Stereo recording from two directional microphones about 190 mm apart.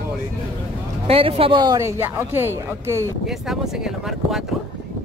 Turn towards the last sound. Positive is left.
turn(degrees=0)  # may be behind; listen again after turning